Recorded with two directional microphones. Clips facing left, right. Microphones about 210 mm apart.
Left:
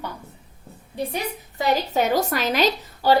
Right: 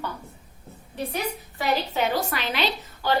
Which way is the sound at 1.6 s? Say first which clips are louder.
Left 3 dB; 40° left (ahead or behind).